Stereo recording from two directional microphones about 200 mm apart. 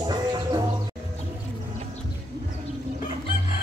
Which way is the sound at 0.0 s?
20° right (ahead or behind).